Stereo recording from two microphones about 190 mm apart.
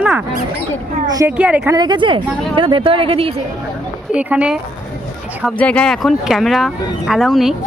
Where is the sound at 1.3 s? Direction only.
5° right (ahead or behind).